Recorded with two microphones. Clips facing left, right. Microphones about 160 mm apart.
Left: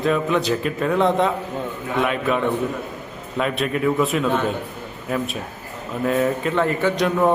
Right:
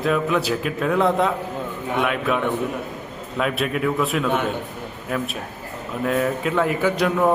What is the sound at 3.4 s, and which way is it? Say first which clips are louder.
Speech: left 1 dB; centre (ahead or behind).